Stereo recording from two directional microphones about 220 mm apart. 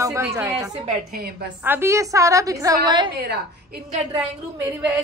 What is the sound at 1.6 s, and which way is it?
A woman's voice, 10° right (ahead or behind).